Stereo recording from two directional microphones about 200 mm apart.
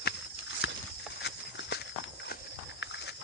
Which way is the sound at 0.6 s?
65° left (ahead or behind).